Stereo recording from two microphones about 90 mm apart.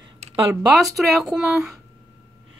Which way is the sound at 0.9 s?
Centre (ahead or behind).